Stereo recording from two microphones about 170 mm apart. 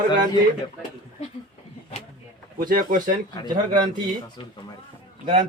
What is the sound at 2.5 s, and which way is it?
Speech, 55° right (ahead or behind).